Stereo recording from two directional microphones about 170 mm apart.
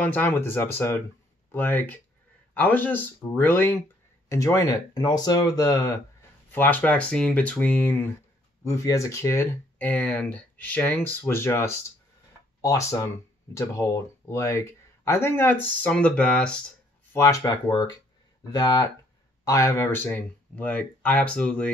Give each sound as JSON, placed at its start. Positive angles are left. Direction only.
{"t": 0.0, "sound": "speech", "side_deg": 10}
{"t": 6.5, "sound": "speech", "side_deg": 10}
{"t": 17.1, "sound": "speech", "side_deg": 15}